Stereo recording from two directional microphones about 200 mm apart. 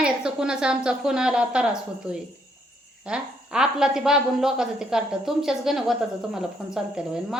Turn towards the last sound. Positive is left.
turn(degrees=-5)  # may be behind; listen again after turning